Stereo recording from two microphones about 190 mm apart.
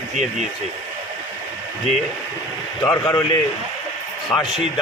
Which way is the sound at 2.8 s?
15° left (ahead or behind).